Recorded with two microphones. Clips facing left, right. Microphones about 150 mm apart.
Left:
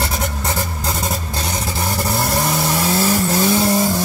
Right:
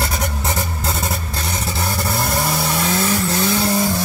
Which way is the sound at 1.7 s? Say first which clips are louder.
Left 1 dB; 10° left (ahead or behind).